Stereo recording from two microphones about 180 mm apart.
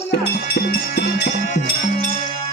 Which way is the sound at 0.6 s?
70° left (ahead or behind).